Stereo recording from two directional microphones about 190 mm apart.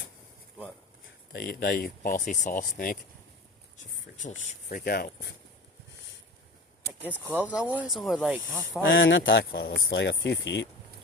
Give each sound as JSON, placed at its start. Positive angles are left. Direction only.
{"t": 1.3, "sound": "speech", "side_deg": 55}
{"t": 7.0, "sound": "speech", "side_deg": -10}
{"t": 8.8, "sound": "speech", "side_deg": 70}